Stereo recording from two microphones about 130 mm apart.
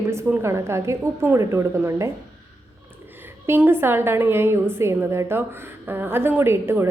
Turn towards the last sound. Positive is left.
turn(degrees=-20)  # may be behind; listen again after turning